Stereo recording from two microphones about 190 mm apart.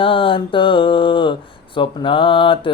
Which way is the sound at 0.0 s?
25° left (ahead or behind).